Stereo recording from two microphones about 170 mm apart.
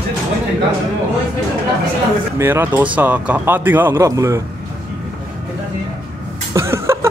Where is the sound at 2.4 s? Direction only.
15° right (ahead or behind).